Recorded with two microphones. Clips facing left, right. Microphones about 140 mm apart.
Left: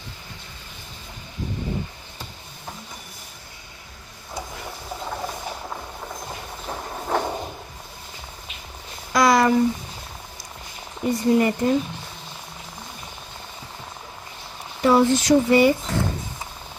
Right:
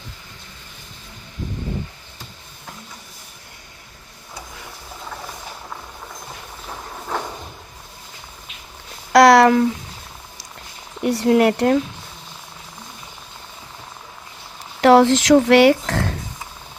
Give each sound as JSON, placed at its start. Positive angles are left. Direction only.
{"t": 6.7, "sound": "train", "side_deg": 30}
{"t": 9.1, "sound": "a sound", "side_deg": -70}
{"t": 11.0, "sound": "speech", "side_deg": -80}
{"t": 14.8, "sound": "speech", "side_deg": -90}